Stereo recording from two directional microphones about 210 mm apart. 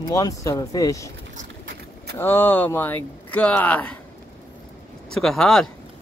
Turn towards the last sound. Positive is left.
turn(degrees=0)  # may be behind; listen again after turning